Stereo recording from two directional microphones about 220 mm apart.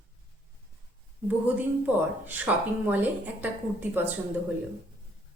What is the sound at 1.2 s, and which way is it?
A woman's voice, 10° right (ahead or behind).